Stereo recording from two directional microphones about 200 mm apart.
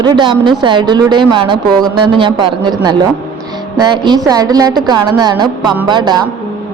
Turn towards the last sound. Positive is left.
turn(degrees=-20)  # may be behind; listen again after turning